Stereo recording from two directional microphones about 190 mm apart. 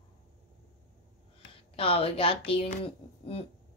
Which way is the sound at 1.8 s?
30° left (ahead or behind).